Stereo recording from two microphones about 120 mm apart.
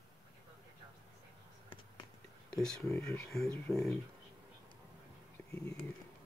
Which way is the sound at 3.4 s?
15° left (ahead or behind).